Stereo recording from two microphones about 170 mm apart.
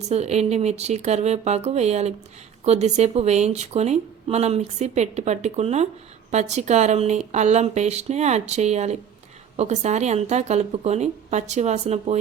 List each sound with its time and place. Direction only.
0.1 s speech: 40° right (ahead or behind)